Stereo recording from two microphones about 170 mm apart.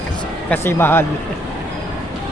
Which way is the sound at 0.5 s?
15° left (ahead or behind).